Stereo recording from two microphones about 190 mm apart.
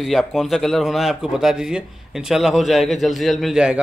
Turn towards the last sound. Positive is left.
turn(degrees=-5)  # may be behind; listen again after turning